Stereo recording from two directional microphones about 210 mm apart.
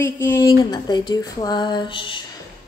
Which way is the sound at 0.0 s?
10° left (ahead or behind).